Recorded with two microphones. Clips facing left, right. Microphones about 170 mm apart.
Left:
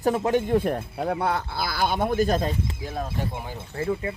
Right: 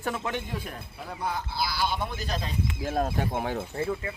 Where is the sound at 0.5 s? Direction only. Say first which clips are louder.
Left 14 dB; 60° left (ahead or behind).